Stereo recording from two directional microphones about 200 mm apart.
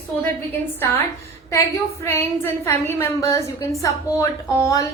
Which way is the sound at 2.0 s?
10° left (ahead or behind).